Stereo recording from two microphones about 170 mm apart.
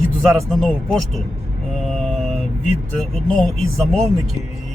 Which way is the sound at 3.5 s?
Centre (ahead or behind).